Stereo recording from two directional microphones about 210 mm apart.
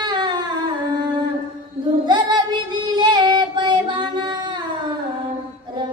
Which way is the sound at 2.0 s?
20° right (ahead or behind).